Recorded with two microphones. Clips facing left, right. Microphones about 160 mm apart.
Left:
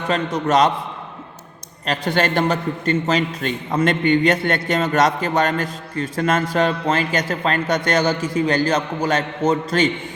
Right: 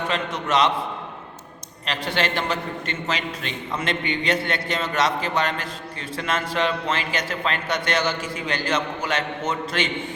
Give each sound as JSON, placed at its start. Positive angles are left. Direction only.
{"t": 0.1, "sound": "a man's voice", "side_deg": 40}
{"t": 1.9, "sound": "a man's voice", "side_deg": 45}